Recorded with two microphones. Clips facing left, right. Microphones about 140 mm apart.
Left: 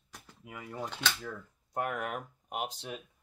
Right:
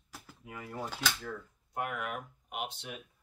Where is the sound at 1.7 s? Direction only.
40° left (ahead or behind).